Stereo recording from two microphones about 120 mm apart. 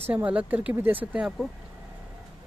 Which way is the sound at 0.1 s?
10° right (ahead or behind).